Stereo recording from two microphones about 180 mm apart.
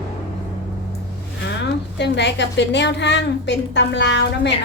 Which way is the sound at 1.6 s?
75° left (ahead or behind).